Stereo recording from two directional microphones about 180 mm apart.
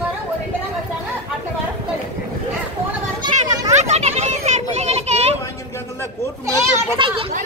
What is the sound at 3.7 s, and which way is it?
A child's voice, 40° right (ahead or behind).